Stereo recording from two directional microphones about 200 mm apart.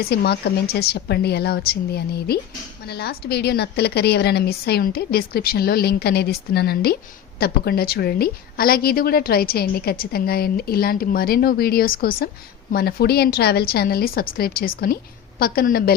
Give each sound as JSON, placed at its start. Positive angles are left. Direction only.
{"t": 0.0, "sound": "a woman's voice", "side_deg": 50}